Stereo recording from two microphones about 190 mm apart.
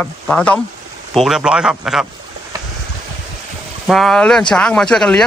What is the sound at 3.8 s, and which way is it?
A man's voice, centre (ahead or behind).